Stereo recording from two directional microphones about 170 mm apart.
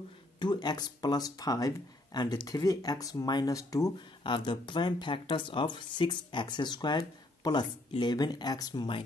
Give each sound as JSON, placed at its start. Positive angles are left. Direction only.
{"t": 0.4, "sound": "speech", "side_deg": 25}